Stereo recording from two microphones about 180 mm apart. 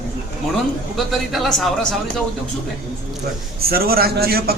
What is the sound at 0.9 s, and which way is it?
A man's voice, centre (ahead or behind).